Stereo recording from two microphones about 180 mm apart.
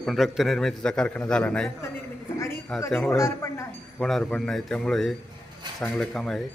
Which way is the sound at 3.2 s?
15° left (ahead or behind).